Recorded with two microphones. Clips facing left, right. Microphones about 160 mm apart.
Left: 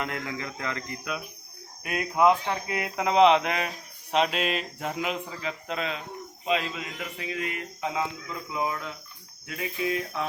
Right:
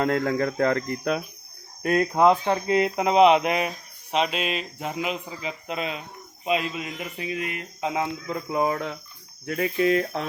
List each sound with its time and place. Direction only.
0.0 s speech: 55° right (ahead or behind)
1.8 s speech: 40° right (ahead or behind); by 3.7 s 15° right (ahead or behind)
4.1 s speech: centre (ahead or behind); by 8.0 s 20° right (ahead or behind)
8.3 s speech: 50° right (ahead or behind)
9.5 s speech: 65° right (ahead or behind)